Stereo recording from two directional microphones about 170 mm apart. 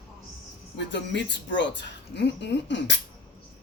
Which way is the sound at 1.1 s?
90° left.